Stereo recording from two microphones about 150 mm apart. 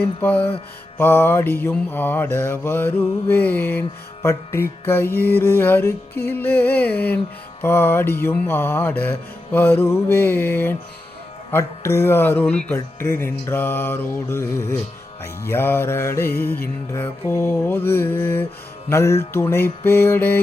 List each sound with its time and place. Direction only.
0.0 s mantra: 10° left (ahead or behind)